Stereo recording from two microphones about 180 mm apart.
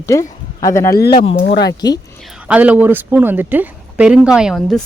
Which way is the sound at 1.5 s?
65° left (ahead or behind).